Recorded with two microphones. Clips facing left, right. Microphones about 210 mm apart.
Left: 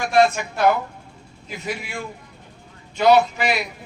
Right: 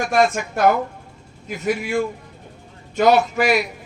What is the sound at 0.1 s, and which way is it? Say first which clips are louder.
Speech: left 3 dB; 45° right (ahead or behind).